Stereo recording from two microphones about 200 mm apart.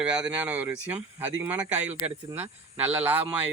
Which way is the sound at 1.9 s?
30° right (ahead or behind).